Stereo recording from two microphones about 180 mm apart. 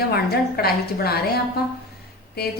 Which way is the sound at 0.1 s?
60° left (ahead or behind).